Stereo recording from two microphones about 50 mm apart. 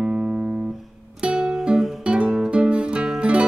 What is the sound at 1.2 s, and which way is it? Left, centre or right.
Music, centre.